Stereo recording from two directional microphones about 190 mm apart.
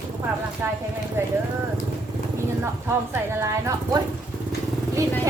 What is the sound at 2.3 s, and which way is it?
Speech, 10° right (ahead or behind).